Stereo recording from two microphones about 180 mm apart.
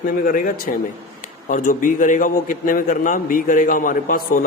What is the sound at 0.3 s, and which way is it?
A man's voice, 50° left (ahead or behind).